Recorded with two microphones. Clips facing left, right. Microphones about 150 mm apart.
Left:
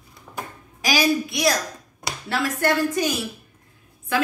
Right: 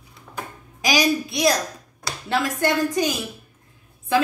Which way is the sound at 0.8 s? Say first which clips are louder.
Even; 20° right (ahead or behind).